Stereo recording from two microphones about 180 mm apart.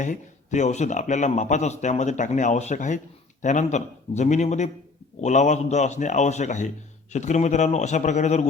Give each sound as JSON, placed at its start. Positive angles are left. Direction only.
{"t": 0.0, "sound": "speech", "side_deg": 45}